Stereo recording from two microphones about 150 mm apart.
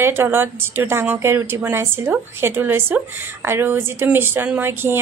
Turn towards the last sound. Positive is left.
turn(degrees=-15)  # may be behind; listen again after turning